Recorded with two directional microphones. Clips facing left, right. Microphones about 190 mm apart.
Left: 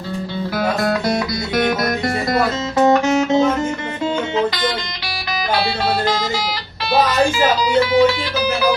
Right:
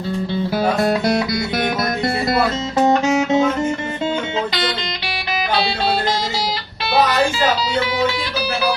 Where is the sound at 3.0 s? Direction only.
20° right (ahead or behind).